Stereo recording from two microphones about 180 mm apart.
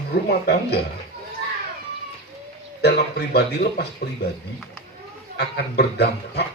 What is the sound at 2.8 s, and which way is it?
Speech, 65° left (ahead or behind).